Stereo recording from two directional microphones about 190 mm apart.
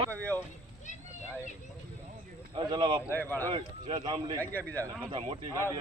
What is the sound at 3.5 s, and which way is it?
Speech, 25° right (ahead or behind).